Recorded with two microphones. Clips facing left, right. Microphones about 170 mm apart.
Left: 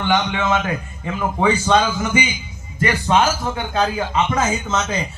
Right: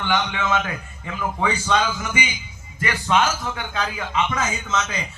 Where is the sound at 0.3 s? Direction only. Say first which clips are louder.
Left 4 dB; 30° left (ahead or behind).